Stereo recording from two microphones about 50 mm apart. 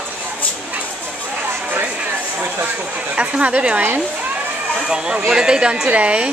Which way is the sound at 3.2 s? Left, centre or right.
Right.